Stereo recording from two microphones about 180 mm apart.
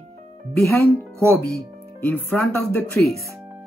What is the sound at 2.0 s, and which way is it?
Music, 10° left (ahead or behind).